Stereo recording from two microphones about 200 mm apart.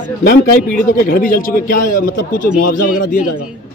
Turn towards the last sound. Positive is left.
turn(degrees=45)  # may be behind; listen again after turning